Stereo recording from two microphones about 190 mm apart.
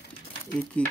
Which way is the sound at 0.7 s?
5° left (ahead or behind).